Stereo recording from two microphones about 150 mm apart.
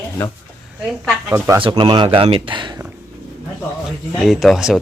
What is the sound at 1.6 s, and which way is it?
Speech, 35° right (ahead or behind).